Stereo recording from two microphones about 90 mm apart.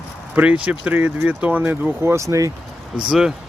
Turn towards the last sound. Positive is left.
turn(degrees=-5)  # may be behind; listen again after turning